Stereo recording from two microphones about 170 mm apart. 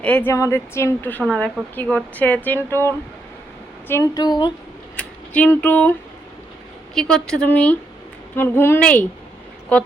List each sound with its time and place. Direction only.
0.0 s speech: 10° left (ahead or behind)
1.3 s a woman's voice: centre (ahead or behind)
1.7 s speech: 10° left (ahead or behind)
3.8 s a woman's voice: 15° left (ahead or behind)
4.9 s a woman's voice: 10° left (ahead or behind)